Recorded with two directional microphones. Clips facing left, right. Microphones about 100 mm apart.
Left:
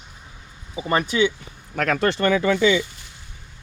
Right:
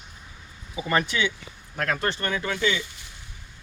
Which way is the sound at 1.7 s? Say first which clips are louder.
Left 6 dB; 90° left.